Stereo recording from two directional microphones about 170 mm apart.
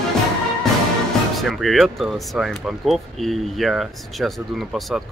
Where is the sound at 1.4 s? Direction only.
Centre (ahead or behind).